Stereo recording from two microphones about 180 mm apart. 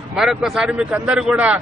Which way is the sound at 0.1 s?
Centre (ahead or behind).